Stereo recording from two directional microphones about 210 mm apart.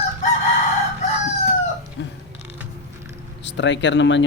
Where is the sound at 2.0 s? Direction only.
55° left (ahead or behind).